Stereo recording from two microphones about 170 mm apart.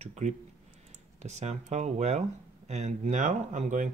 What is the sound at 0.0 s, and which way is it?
Speech, 45° right (ahead or behind).